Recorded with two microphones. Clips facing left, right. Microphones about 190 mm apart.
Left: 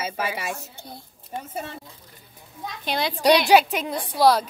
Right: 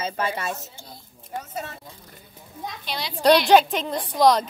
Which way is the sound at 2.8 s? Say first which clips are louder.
Left 8 dB; 50° left (ahead or behind).